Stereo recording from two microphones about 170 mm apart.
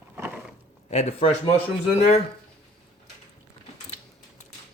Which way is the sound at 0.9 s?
40° left (ahead or behind).